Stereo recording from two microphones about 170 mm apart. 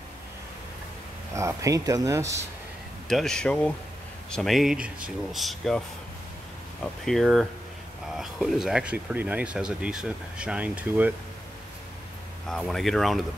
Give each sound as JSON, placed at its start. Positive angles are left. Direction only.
{"t": 1.3, "sound": "speech", "side_deg": -20}
{"t": 3.1, "sound": "speech", "side_deg": 0}
{"t": 12.4, "sound": "speech", "side_deg": 0}